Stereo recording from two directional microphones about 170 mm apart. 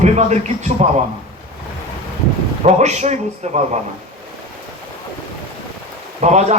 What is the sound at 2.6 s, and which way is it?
A man's voice, 40° right (ahead or behind).